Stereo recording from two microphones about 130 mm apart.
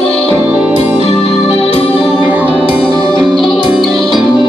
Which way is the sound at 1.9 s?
Centre (ahead or behind).